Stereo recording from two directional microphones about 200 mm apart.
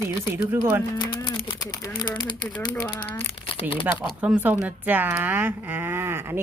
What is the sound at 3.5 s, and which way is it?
Speech, 25° left (ahead or behind).